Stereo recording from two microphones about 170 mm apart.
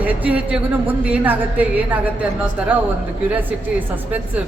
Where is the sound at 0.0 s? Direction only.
10° right (ahead or behind).